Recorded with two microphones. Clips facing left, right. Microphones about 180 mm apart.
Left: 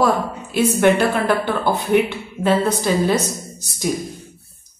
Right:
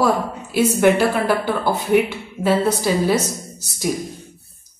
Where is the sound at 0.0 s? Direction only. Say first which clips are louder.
Left 1 dB; 5° right (ahead or behind).